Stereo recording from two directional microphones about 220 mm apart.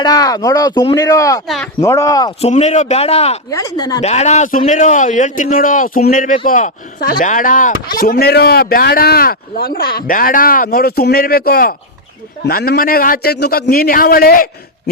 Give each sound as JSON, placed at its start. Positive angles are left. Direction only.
{"t": 0.0, "sound": "speech", "side_deg": 15}
{"t": 2.4, "sound": "a man's voice", "side_deg": 30}
{"t": 3.5, "sound": "speech", "side_deg": 15}
{"t": 4.0, "sound": "a man's voice", "side_deg": 30}